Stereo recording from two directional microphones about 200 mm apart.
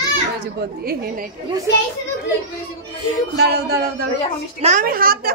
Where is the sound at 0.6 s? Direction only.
50° right (ahead or behind).